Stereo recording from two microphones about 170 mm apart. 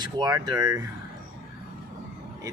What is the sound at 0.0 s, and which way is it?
Speech, 25° right (ahead or behind).